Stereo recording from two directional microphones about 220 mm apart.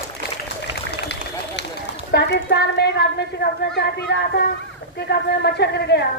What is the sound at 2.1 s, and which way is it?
A woman's voice, 50° left (ahead or behind).